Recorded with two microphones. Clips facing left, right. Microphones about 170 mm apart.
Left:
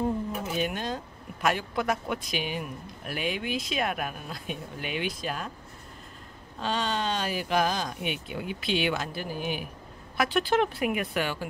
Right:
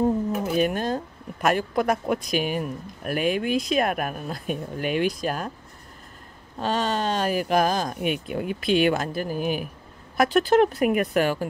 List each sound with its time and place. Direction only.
0.6 s speech: 45° right (ahead or behind)
6.6 s speech: 45° right (ahead or behind)